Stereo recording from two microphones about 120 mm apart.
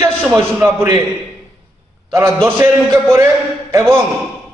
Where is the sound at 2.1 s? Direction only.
20° right (ahead or behind).